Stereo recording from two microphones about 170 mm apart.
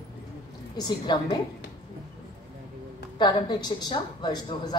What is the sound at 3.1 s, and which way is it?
A woman's voice, 25° left (ahead or behind).